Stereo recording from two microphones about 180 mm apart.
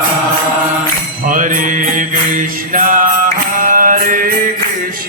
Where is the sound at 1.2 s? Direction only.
50° right (ahead or behind).